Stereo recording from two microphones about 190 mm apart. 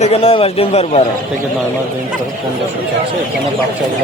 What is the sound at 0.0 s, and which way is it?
Speech, 30° left (ahead or behind).